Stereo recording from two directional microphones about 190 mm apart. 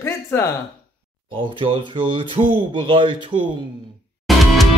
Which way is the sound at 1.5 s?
30° right (ahead or behind).